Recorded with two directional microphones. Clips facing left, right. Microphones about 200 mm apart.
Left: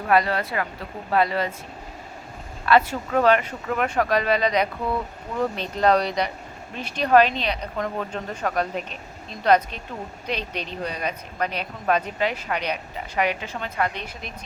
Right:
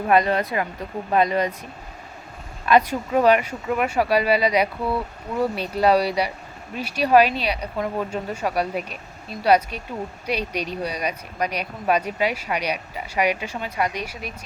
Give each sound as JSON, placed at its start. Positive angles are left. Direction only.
{"t": 0.1, "sound": "speech", "side_deg": -20}
{"t": 2.6, "sound": "speech", "side_deg": -15}